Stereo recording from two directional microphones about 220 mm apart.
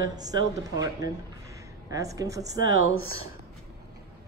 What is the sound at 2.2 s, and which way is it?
Speech, 15° right (ahead or behind).